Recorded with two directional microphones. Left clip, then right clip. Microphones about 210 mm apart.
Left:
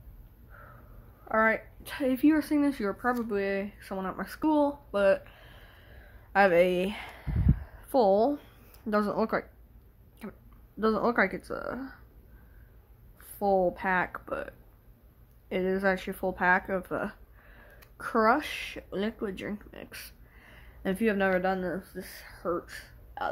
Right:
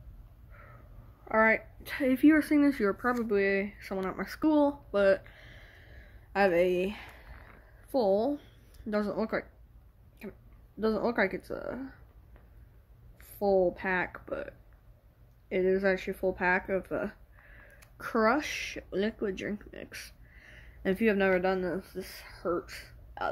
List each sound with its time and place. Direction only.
1.3 s speech: 5° left (ahead or behind)
6.4 s speech: 30° left (ahead or behind)
13.2 s a woman's voice: 15° left (ahead or behind)